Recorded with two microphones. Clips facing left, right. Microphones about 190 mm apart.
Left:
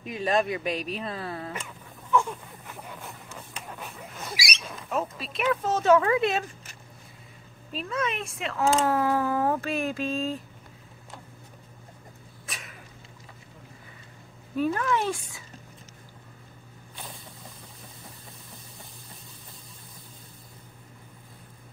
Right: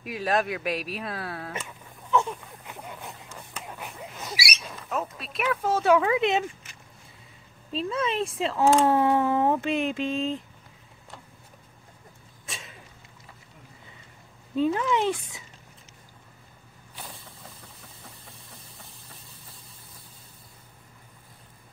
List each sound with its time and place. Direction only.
0.0 s speech: 5° right (ahead or behind)
2.0 s a sound: 20° right (ahead or behind)
4.3 s speech: 5° right (ahead or behind)
7.7 s speech: 30° right (ahead or behind)
12.4 s a sound: 25° right (ahead or behind)
14.5 s speech: 20° right (ahead or behind)